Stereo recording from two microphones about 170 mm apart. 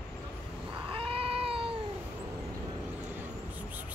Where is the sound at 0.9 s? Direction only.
35° right (ahead or behind).